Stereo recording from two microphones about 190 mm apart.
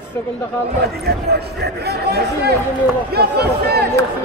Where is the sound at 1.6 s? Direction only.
60° right (ahead or behind).